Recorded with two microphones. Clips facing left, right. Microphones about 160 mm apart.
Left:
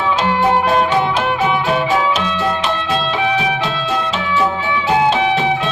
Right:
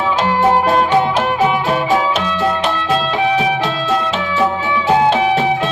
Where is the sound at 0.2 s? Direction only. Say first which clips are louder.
Right 3 dB; 40° right (ahead or behind).